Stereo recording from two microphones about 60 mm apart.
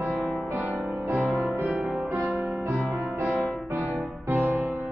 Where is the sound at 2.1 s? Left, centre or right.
Right.